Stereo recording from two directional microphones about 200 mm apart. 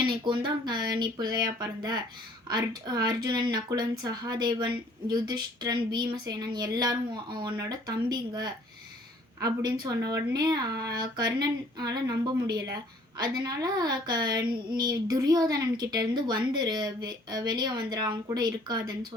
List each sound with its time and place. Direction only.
0.0 s speech: 25° right (ahead or behind)